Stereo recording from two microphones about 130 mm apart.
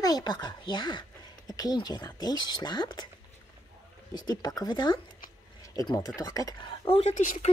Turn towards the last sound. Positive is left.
turn(degrees=90)